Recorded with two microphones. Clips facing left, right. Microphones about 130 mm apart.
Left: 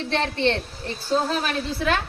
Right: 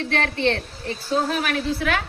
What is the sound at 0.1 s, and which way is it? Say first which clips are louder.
A woman's voice: left 1 dB; 30° left (ahead or behind).